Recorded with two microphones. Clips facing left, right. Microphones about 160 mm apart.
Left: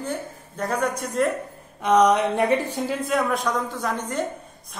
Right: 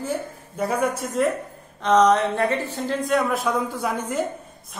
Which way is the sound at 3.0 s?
Centre (ahead or behind).